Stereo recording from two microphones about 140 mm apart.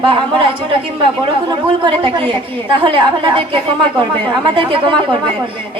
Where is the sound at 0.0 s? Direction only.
40° right (ahead or behind).